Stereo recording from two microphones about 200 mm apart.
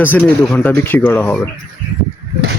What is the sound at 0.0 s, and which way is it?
Speech, 10° left (ahead or behind).